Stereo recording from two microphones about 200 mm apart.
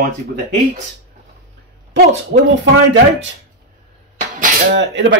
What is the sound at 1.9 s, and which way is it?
Speech, 50° right (ahead or behind).